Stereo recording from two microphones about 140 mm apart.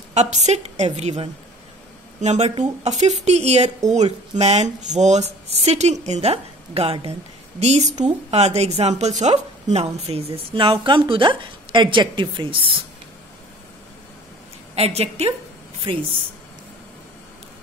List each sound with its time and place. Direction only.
0.1 s a woman's voice: 55° right (ahead or behind)
7.6 s a woman's voice: 55° right (ahead or behind); by 12.7 s 35° right (ahead or behind)
14.8 s a woman's voice: 45° right (ahead or behind)